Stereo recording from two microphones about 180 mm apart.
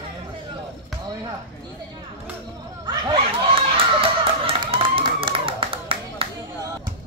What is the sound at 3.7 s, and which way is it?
Clapping, 30° right (ahead or behind).